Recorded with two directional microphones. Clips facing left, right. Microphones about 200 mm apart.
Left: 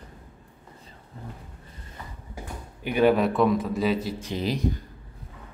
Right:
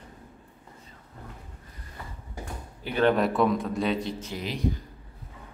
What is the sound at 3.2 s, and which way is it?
A man's voice, centre (ahead or behind).